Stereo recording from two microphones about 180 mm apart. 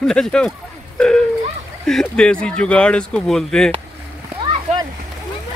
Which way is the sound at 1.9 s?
5° left (ahead or behind).